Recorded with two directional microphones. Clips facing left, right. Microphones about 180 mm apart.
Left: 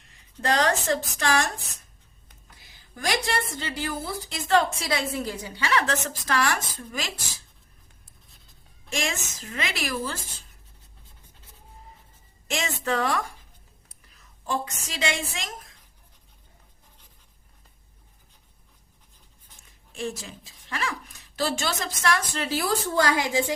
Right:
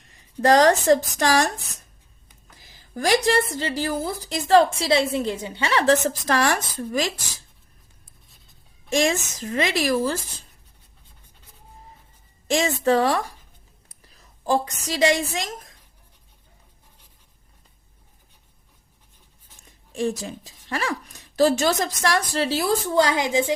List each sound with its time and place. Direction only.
0.3 s a woman's voice: 40° right (ahead or behind)
2.9 s a woman's voice: 35° right (ahead or behind)
8.9 s a woman's voice: 35° right (ahead or behind)
12.5 s a woman's voice: 35° right (ahead or behind)
20.0 s a woman's voice: 35° right (ahead or behind); by 23.5 s 20° right (ahead or behind)